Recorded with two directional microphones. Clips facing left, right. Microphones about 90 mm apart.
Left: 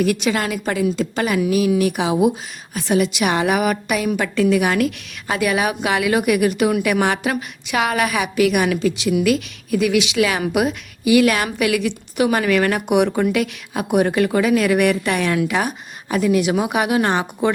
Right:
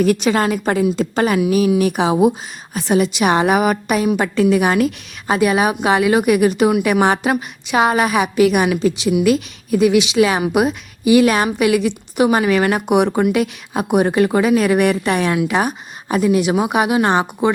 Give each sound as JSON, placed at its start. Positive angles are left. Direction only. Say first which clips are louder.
{"t": 0.0, "sound": "a woman's voice", "louder": "right 4 dB", "side_deg": -35}